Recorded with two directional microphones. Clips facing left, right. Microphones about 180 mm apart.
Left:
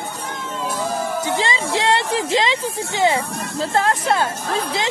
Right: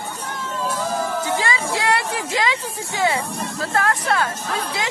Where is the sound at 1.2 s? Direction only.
20° left (ahead or behind).